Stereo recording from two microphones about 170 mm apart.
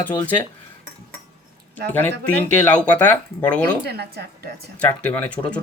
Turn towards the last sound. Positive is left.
turn(degrees=10)  # may be behind; listen again after turning